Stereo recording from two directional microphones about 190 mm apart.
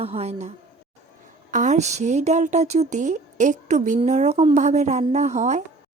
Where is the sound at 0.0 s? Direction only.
30° right (ahead or behind).